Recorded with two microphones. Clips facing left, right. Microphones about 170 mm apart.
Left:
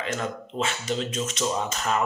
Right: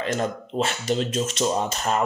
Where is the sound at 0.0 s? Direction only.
35° right (ahead or behind).